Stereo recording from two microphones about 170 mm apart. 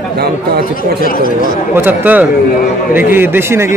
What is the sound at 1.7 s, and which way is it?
A man's voice, 10° right (ahead or behind).